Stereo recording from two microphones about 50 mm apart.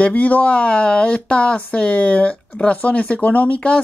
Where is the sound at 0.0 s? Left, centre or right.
Left.